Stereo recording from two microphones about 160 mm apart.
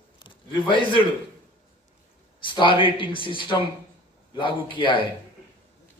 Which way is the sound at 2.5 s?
30° left (ahead or behind).